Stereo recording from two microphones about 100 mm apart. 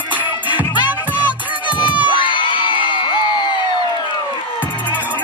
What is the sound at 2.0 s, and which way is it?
Crowd, 55° left (ahead or behind).